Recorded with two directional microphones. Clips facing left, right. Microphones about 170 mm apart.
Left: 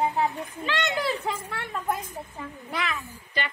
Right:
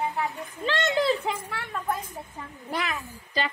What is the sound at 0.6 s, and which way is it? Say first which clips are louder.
Speech: right 4 dB; 25° right (ahead or behind).